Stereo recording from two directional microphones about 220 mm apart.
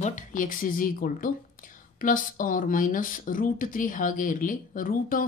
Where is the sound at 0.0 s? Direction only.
35° left (ahead or behind).